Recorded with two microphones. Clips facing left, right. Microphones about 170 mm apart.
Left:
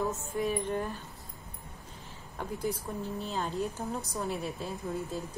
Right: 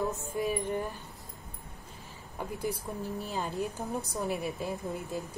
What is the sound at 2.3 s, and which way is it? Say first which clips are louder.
A woman's voice: left 1 dB; 10° right (ahead or behind).